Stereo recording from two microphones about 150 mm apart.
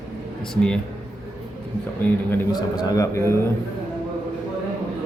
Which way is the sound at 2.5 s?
25° left (ahead or behind).